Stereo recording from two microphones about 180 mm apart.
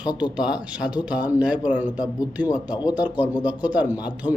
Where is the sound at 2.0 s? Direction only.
20° left (ahead or behind).